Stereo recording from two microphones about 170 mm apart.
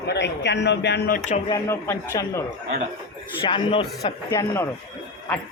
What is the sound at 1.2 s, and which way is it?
Speech, 40° left (ahead or behind).